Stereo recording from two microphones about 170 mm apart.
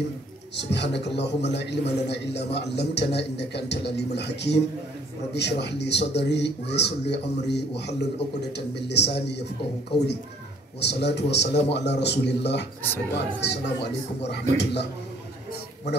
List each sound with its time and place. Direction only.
0.6 s speech: 90° left